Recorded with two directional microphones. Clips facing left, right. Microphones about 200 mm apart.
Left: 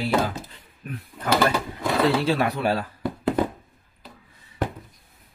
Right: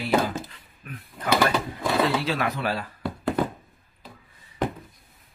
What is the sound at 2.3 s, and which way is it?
Speech, 30° left (ahead or behind).